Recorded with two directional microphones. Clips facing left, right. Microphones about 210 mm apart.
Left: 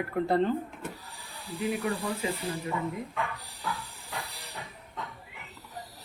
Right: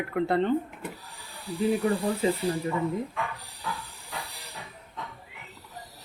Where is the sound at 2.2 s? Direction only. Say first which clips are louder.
Right 8 dB; 35° right (ahead or behind).